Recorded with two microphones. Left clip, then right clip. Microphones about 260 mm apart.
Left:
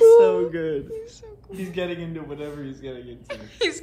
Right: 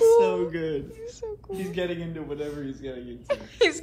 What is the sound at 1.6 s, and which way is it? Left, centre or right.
A man's voice, left.